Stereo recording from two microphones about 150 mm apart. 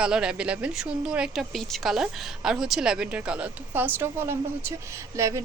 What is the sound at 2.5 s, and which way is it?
A woman's voice, centre (ahead or behind).